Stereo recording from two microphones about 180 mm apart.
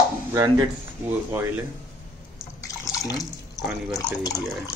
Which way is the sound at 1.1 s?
10° right (ahead or behind).